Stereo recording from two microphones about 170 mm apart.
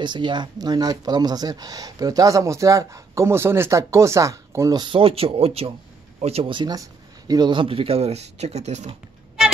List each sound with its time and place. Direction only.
0.0 s a man's voice: 25° right (ahead or behind)